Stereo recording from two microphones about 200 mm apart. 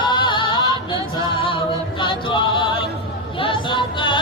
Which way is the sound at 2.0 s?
25° left (ahead or behind).